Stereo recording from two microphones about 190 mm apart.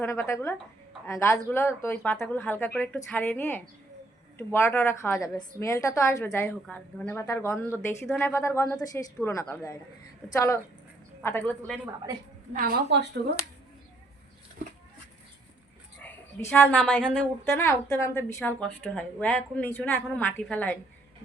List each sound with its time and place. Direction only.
0.0 s a woman's voice: 15° left (ahead or behind)
8.0 s a woman's voice: centre (ahead or behind)
8.3 s a woman's voice: 15° left (ahead or behind)
12.5 s a woman's voice: 50° right (ahead or behind)
16.0 s a woman's voice: 10° left (ahead or behind)